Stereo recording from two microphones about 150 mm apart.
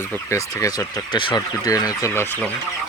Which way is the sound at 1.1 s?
30° left (ahead or behind).